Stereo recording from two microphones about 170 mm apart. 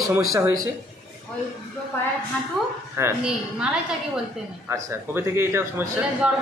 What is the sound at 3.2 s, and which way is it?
Speech, 5° right (ahead or behind).